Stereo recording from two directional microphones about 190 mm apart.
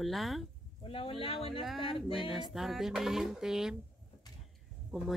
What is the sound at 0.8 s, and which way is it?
Speech, 30° left (ahead or behind).